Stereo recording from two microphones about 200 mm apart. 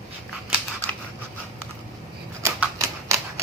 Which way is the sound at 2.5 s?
15° right (ahead or behind).